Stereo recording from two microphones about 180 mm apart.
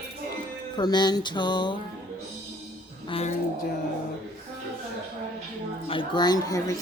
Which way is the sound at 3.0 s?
30° left (ahead or behind).